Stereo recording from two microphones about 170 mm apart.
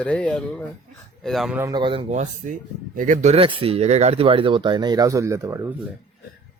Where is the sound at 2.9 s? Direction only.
50° right (ahead or behind); by 5.6 s 15° right (ahead or behind).